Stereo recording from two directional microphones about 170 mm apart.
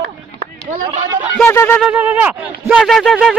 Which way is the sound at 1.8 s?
10° right (ahead or behind).